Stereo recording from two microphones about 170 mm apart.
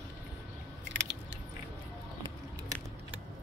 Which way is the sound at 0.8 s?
90° right.